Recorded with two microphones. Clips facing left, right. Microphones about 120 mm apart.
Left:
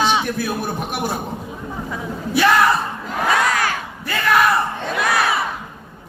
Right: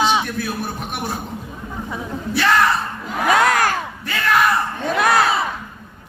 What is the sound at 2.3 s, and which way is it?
Speech, 10° left (ahead or behind).